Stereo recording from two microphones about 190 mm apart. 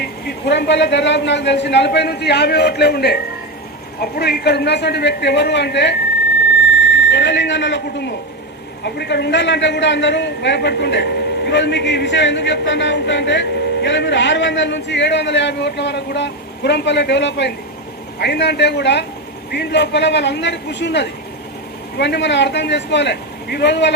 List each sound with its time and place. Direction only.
0.0 s a man's voice: 60° left (ahead or behind)